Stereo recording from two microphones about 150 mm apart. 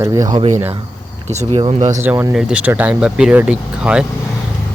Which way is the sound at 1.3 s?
40° right (ahead or behind).